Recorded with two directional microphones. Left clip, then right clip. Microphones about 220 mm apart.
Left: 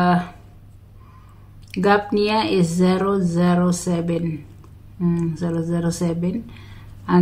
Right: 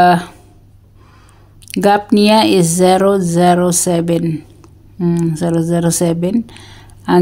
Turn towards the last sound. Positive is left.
turn(degrees=-50)  # may be behind; listen again after turning